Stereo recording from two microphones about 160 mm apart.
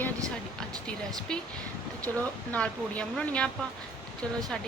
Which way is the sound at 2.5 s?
10° left (ahead or behind).